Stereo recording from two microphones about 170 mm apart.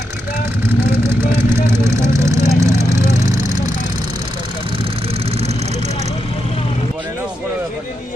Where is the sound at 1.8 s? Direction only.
15° right (ahead or behind).